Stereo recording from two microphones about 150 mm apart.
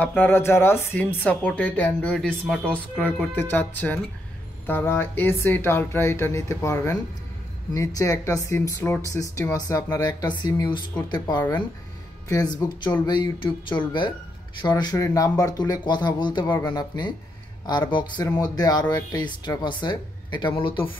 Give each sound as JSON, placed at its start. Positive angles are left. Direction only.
{"t": 0.0, "sound": "speech", "side_deg": 10}